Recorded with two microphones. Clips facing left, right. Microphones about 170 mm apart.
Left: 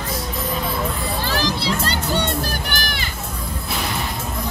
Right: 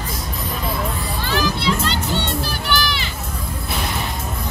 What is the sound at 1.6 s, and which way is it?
Music, 40° left (ahead or behind).